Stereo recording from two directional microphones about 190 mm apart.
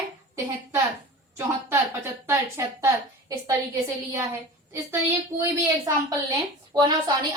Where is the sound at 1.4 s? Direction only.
15° right (ahead or behind).